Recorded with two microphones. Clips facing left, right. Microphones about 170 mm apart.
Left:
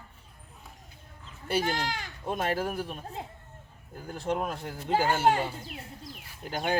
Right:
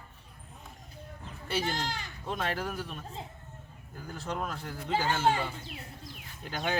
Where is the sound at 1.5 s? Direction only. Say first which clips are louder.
Left 4 dB; 50° left (ahead or behind).